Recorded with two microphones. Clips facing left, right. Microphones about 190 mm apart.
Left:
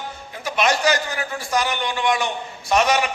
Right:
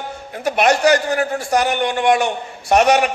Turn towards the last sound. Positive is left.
turn(degrees=-65)  # may be behind; listen again after turning